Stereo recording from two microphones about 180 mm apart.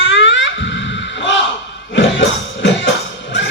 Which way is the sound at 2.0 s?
90° left.